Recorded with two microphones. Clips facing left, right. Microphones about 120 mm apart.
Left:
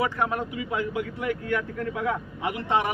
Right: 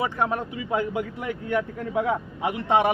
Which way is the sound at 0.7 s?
35° right (ahead or behind).